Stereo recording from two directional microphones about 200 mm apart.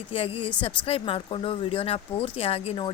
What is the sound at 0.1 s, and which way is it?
A woman's voice, 30° left (ahead or behind).